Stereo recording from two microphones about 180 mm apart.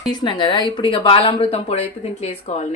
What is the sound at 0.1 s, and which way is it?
Speech, 25° left (ahead or behind).